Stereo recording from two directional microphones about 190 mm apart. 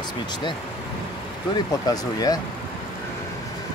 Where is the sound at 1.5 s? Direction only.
20° left (ahead or behind).